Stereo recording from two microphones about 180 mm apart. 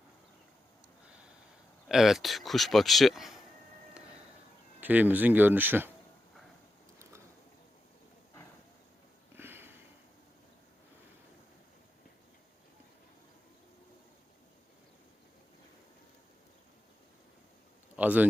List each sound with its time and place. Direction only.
1.9 s speech: centre (ahead or behind)
4.8 s speech: 10° right (ahead or behind)
9.3 s sniff: 10° right (ahead or behind)
17.9 s a sound: 10° right (ahead or behind)